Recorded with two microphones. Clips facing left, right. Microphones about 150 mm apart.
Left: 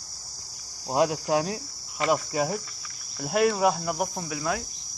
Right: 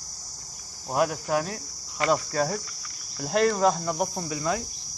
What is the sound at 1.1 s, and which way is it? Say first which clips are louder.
A man's voice: left 2 dB; 15° left (ahead or behind).